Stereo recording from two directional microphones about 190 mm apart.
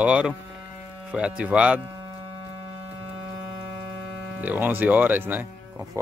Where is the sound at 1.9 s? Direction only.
20° right (ahead or behind).